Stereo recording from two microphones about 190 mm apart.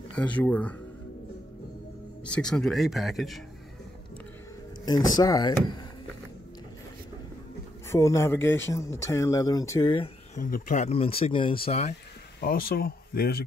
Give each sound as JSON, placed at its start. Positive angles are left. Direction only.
{"t": 0.2, "sound": "speech", "side_deg": 5}
{"t": 2.2, "sound": "speech", "side_deg": 5}
{"t": 4.8, "sound": "speech", "side_deg": 20}
{"t": 7.9, "sound": "speech", "side_deg": 15}
{"t": 10.4, "sound": "speech", "side_deg": 45}
{"t": 12.4, "sound": "speech", "side_deg": 50}